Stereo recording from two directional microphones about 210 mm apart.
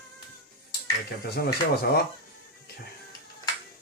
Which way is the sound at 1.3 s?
50° left (ahead or behind).